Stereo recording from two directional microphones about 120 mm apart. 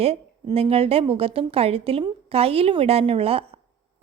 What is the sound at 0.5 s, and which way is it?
A woman's voice, 50° right (ahead or behind).